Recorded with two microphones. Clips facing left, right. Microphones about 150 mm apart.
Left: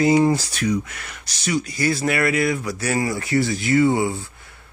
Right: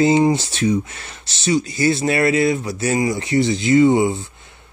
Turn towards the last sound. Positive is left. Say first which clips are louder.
# right 4 dB
turn(degrees=-20)  # may be behind; listen again after turning